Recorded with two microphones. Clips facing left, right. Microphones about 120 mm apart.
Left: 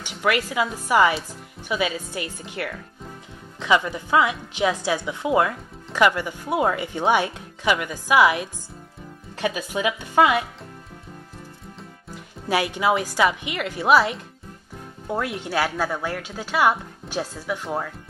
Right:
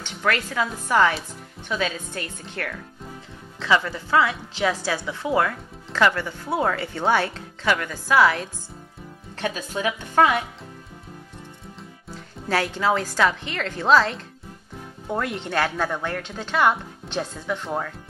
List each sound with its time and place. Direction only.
0.0 s a woman's voice: 10° left (ahead or behind)
12.1 s a woman's voice: 15° left (ahead or behind)